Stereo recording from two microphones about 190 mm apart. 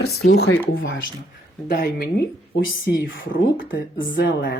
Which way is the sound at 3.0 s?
80° left.